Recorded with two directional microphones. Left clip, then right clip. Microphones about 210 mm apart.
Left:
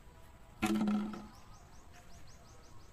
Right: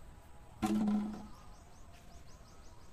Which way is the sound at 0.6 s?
25° left (ahead or behind).